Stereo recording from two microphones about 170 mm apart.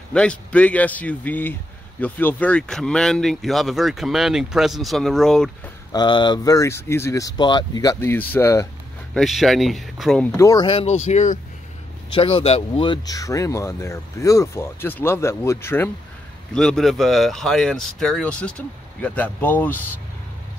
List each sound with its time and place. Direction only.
0.1 s speech: 5° left (ahead or behind)
5.9 s speech: 25° left (ahead or behind)
9.1 s speech: centre (ahead or behind)
10.3 s speech: 20° left (ahead or behind)
10.7 s speech: 35° left (ahead or behind)
12.1 s speech: 30° left (ahead or behind); by 15.9 s 15° left (ahead or behind)
16.5 s speech: centre (ahead or behind)